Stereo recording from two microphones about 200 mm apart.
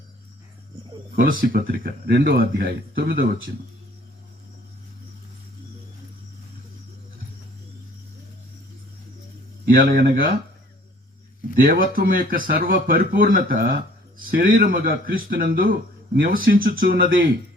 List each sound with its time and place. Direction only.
1.4 s a man's voice: 45° right (ahead or behind)
9.6 s a man's voice: 45° right (ahead or behind)
11.6 s a man's voice: 45° right (ahead or behind)